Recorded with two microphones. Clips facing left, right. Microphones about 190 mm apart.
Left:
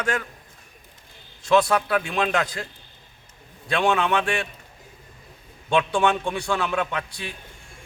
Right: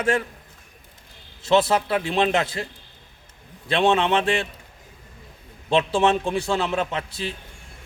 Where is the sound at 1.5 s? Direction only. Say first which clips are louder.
Even; 25° right (ahead or behind).